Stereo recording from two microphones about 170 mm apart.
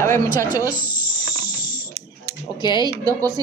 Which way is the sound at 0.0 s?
20° left (ahead or behind).